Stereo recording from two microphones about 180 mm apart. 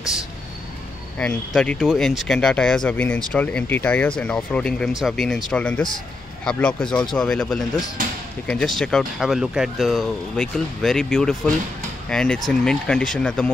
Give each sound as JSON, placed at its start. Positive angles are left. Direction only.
{"t": 1.1, "sound": "speech", "side_deg": 5}